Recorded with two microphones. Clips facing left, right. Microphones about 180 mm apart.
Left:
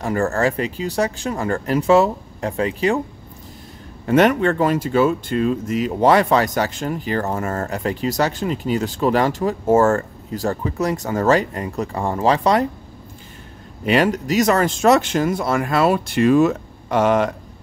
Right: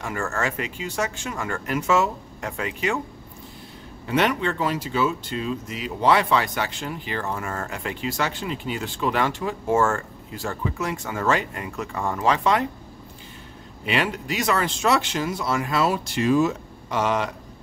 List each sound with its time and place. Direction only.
0.0 s speech: 35° left (ahead or behind)
4.0 s speech: 50° left (ahead or behind)
13.8 s speech: 40° left (ahead or behind)